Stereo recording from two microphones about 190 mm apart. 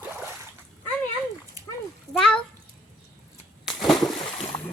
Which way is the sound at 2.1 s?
Centre (ahead or behind).